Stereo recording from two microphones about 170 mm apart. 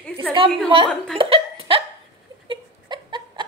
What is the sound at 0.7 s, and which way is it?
Speech, 30° right (ahead or behind).